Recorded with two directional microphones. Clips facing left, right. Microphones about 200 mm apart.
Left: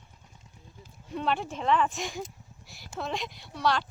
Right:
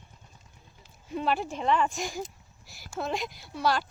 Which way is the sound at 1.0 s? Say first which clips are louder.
Right 1 dB; 5° right (ahead or behind).